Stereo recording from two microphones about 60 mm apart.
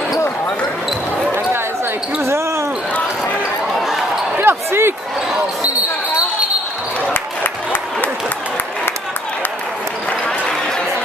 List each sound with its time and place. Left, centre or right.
2.2 s basketball bounce: right
3.8 s basketball bounce: centre
4.4 s basketball bounce: right
10.2 s basketball bounce: left